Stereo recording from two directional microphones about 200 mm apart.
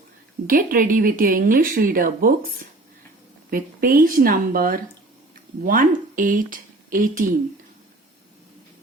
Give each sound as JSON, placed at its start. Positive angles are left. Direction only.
{"t": 0.4, "sound": "speech", "side_deg": -45}
{"t": 3.5, "sound": "speech", "side_deg": -45}